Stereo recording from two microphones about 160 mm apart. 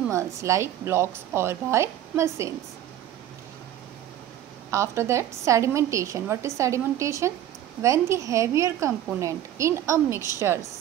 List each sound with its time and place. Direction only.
0.1 s a woman's voice: 20° right (ahead or behind)
4.6 s a woman's voice: 15° right (ahead or behind)